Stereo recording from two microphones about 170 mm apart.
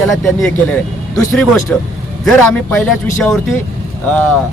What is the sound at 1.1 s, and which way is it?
Speech, 15° left (ahead or behind).